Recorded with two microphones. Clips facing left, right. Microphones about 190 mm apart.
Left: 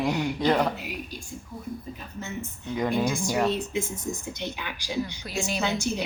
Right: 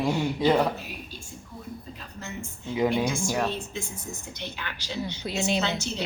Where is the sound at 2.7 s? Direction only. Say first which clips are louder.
Right 1 dB; 5° right (ahead or behind).